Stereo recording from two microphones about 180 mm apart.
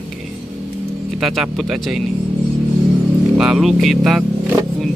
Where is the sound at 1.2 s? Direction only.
Centre (ahead or behind).